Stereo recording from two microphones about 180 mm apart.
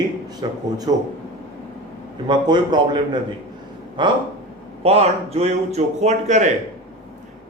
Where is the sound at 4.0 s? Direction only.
25° right (ahead or behind).